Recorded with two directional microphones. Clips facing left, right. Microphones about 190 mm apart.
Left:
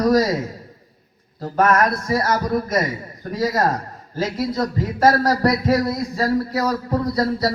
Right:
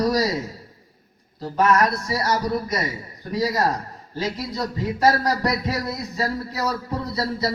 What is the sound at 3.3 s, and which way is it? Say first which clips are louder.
A man's voice: left 2 dB; 50° left (ahead or behind).